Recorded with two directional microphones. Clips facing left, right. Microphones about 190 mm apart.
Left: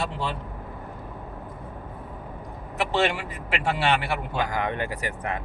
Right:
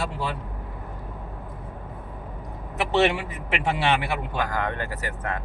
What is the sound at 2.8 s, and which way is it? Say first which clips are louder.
Speech: right 3 dB; 20° right (ahead or behind).